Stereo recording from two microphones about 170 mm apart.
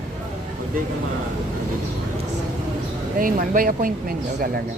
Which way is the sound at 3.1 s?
55° right (ahead or behind).